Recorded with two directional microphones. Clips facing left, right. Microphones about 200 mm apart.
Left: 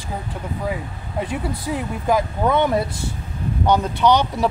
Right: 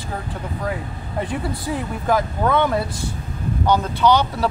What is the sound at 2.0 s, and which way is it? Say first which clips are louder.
Speech: left 1 dB; 15° left (ahead or behind).